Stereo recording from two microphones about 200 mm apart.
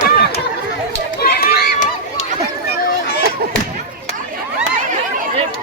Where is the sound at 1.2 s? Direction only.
50° left (ahead or behind).